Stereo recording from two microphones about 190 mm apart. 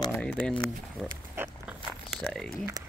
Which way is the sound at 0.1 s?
5° left (ahead or behind).